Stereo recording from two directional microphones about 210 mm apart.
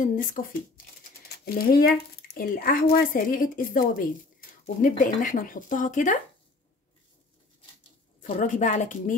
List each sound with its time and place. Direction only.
0.0 s speech: 40° left (ahead or behind)
8.2 s speech: 35° left (ahead or behind)